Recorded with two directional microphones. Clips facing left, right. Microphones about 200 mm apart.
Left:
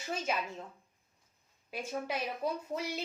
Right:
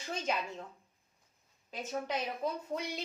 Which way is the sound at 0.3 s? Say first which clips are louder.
Even; 5° left (ahead or behind).